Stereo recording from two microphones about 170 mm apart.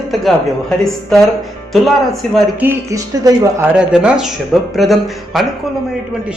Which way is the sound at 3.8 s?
5° right (ahead or behind).